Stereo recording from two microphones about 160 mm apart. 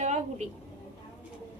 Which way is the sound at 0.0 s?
45° right (ahead or behind).